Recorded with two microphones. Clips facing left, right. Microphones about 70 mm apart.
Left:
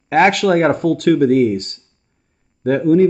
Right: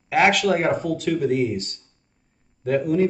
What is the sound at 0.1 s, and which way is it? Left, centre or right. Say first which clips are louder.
Speech: left 5 dB; left.